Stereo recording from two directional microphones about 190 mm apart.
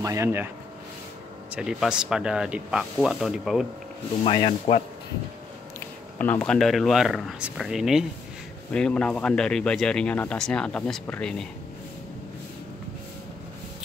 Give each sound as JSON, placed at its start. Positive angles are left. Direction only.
{"t": 0.0, "sound": "speech", "side_deg": -15}
{"t": 1.5, "sound": "speech", "side_deg": -5}
{"t": 4.2, "sound": "speech", "side_deg": 30}
{"t": 6.1, "sound": "speech", "side_deg": 10}